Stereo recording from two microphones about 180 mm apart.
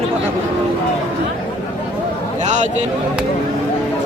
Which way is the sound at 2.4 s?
40° right (ahead or behind).